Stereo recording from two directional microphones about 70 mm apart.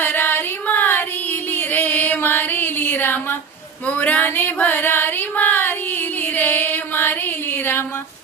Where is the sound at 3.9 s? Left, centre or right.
Left.